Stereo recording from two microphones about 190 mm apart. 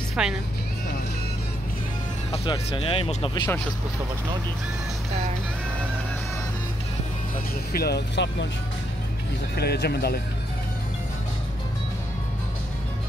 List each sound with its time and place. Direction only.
0.1 s speech: 5° right (ahead or behind)
2.3 s speech: 25° left (ahead or behind)
7.7 s speech: 55° left (ahead or behind)
9.6 s speech: 55° left (ahead or behind)